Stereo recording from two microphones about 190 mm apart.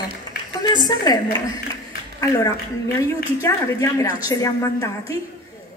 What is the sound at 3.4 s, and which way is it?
A woman's voice, 15° left (ahead or behind).